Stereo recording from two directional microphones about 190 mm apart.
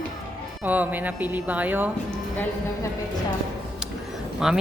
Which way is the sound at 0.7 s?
10° right (ahead or behind).